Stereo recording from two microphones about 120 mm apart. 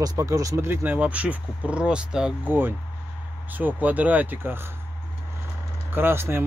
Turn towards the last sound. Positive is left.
turn(degrees=-20)  # may be behind; listen again after turning